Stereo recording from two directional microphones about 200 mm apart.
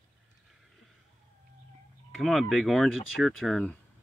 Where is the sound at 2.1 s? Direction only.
Centre (ahead or behind).